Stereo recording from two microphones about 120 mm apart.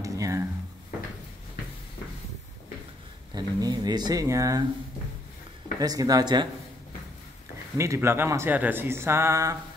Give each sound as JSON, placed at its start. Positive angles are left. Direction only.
{"t": 0.0, "sound": "a sound", "side_deg": -25}
{"t": 3.3, "sound": "speech", "side_deg": -35}
{"t": 5.8, "sound": "speech", "side_deg": -30}
{"t": 7.7, "sound": "speech", "side_deg": -25}